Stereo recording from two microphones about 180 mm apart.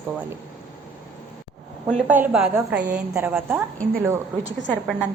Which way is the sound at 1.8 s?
5° right (ahead or behind).